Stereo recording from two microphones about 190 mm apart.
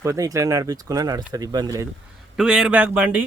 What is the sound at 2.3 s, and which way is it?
Speech, 5° right (ahead or behind).